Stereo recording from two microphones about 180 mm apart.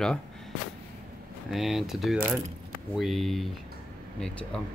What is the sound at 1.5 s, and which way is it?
Speech, centre (ahead or behind).